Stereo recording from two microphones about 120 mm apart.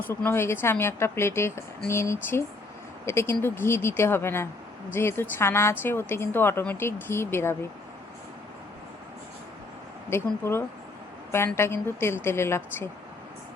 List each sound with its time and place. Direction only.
0.0 s speech: 15° left (ahead or behind)
10.1 s speech: 20° left (ahead or behind)